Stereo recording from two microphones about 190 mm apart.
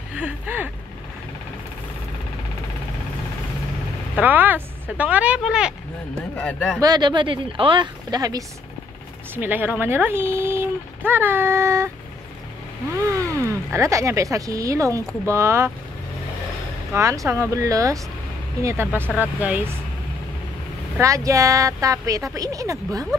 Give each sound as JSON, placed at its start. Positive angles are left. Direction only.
{"t": 0.1, "sound": "speech", "side_deg": -10}
{"t": 4.1, "sound": "speech", "side_deg": -10}
{"t": 6.3, "sound": "speech", "side_deg": 5}
{"t": 6.8, "sound": "speech", "side_deg": -20}
{"t": 12.9, "sound": "speech", "side_deg": -15}
{"t": 16.9, "sound": "speech", "side_deg": -15}
{"t": 21.0, "sound": "speech", "side_deg": -15}